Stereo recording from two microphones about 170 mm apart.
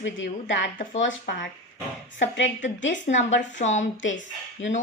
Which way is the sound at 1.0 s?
80° left.